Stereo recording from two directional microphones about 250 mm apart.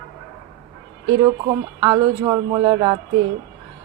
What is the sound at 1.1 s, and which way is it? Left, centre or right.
Speech, centre.